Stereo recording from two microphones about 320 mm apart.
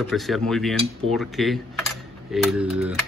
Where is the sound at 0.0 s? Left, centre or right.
Centre.